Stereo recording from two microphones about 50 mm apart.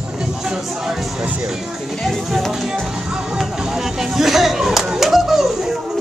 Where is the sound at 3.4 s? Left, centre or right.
Centre.